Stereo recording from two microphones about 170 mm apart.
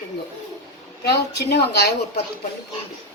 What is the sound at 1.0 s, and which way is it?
Speech, 80° left.